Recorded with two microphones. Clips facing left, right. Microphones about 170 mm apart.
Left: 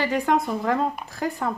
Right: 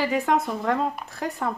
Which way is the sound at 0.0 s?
Centre (ahead or behind).